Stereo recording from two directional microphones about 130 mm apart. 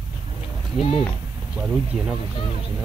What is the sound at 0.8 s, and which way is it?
Speech, 45° left (ahead or behind).